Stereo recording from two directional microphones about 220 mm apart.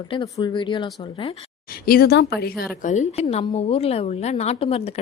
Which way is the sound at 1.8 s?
45° left (ahead or behind).